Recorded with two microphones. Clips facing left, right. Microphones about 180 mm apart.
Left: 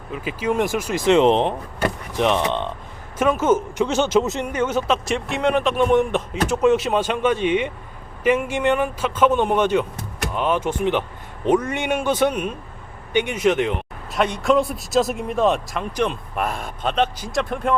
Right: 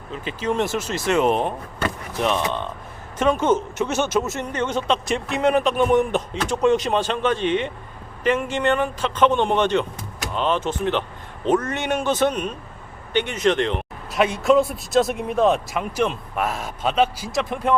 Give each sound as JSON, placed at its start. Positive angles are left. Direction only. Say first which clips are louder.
{"t": 0.1, "sound": "speech", "louder": "left 2 dB", "side_deg": 10}
{"t": 3.2, "sound": "speech", "louder": "left 1 dB", "side_deg": 5}
{"t": 14.2, "sound": "speech", "louder": "right 1 dB", "side_deg": -5}